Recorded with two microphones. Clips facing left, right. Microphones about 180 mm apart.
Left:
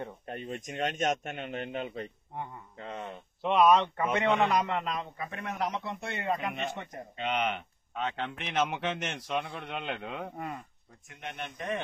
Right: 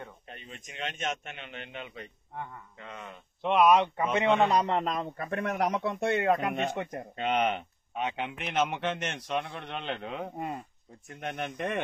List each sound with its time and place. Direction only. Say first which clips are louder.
0.3 s speech: left 9 dB; 50° left (ahead or behind); by 3.2 s 30° left (ahead or behind)
3.4 s a man's voice: right 1 dB; 5° right (ahead or behind)
4.5 s a man's voice: right 3 dB; 35° right (ahead or behind); by 6.7 s 60° right (ahead or behind)
7.2 s speech: right 3 dB; 45° right (ahead or behind)
7.9 s speech: right 1 dB; 15° right (ahead or behind)
8.3 s a man's voice: right 1 dB; centre (ahead or behind)
10.3 s speech: right 3 dB; 25° right (ahead or behind)
11.1 s speech: right 5 dB; 50° right (ahead or behind)
11.5 s a man's voice: right 1 dB; 60° right (ahead or behind)